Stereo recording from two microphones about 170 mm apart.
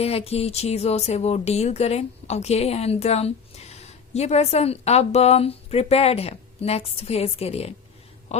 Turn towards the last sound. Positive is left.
turn(degrees=35)  # may be behind; listen again after turning